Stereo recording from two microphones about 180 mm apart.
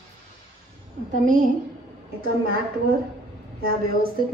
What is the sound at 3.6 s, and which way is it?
Speech, 55° right (ahead or behind).